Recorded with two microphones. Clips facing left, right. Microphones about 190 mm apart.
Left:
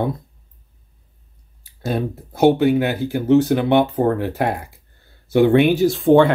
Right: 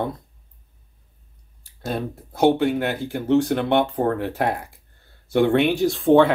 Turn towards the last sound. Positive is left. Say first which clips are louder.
# left 2 dB
turn(degrees=0)  # may be behind; listen again after turning